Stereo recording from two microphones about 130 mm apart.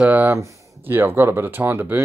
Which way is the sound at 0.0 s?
10° right (ahead or behind).